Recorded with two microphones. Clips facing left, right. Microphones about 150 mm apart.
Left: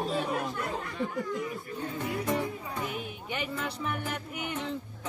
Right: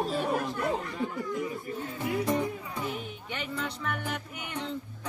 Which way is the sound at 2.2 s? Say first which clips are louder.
Right 2 dB; 20° right (ahead or behind).